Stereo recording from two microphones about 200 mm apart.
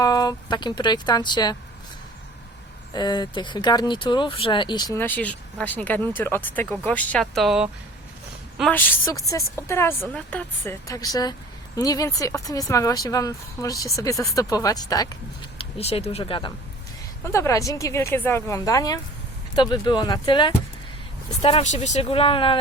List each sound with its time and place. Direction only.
0.0 s speech: 20° left (ahead or behind)
2.9 s speech: 20° left (ahead or behind)
17.2 s speech: 15° left (ahead or behind)
21.4 s speech: 35° left (ahead or behind)